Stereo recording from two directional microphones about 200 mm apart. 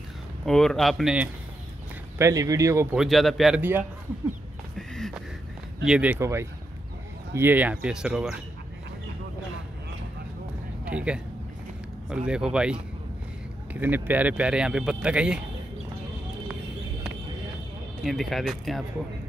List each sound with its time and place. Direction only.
0.5 s speech: centre (ahead or behind)
2.1 s speech: 15° right (ahead or behind)
3.0 s speech: centre (ahead or behind)
4.7 s a sound: centre (ahead or behind)
5.9 s speech: 5° right (ahead or behind)
10.9 s speech: 5° right (ahead or behind)
18.0 s speech: centre (ahead or behind)